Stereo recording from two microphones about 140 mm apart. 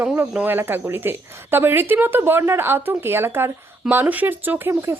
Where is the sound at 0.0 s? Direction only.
10° right (ahead or behind).